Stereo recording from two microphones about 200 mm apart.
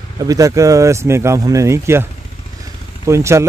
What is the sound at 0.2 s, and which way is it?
Speech, 15° right (ahead or behind).